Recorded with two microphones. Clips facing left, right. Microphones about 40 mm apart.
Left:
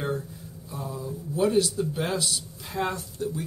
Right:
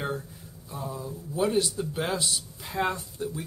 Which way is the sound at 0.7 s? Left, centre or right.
Centre.